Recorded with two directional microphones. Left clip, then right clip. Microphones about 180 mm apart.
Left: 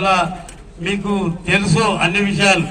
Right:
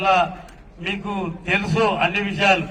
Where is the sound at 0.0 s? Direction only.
45° right (ahead or behind).